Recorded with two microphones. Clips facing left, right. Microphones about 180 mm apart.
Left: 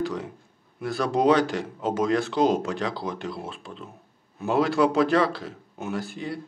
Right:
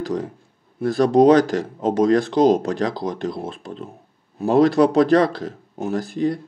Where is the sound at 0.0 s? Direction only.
35° right (ahead or behind).